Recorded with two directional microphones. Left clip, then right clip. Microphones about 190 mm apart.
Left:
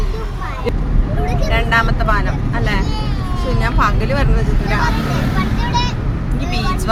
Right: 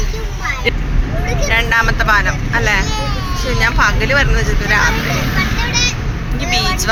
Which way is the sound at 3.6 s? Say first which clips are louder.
Right 4 dB; 10° left (ahead or behind).